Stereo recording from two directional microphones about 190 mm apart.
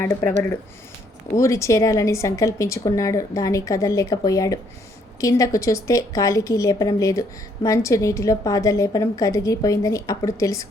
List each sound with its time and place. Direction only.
0.0 s a woman's voice: 15° left (ahead or behind)
1.4 s a woman's voice: 15° left (ahead or behind)